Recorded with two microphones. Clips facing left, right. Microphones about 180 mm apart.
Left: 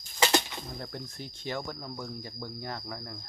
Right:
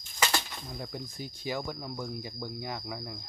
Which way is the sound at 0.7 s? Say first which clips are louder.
Right 4 dB; 5° right (ahead or behind).